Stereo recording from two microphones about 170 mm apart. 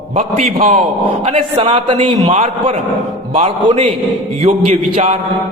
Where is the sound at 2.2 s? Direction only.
45° right (ahead or behind).